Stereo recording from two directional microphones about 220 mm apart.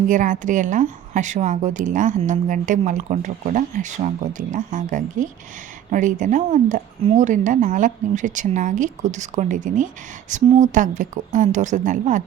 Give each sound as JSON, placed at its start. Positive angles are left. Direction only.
{"t": 0.1, "sound": "speech", "side_deg": -35}